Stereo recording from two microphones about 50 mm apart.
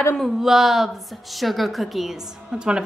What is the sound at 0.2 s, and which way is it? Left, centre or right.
A woman's voice, centre.